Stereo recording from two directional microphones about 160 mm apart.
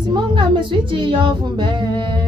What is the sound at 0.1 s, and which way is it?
Child singing, 30° right (ahead or behind).